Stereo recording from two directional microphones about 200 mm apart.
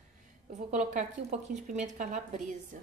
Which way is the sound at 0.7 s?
35° right (ahead or behind).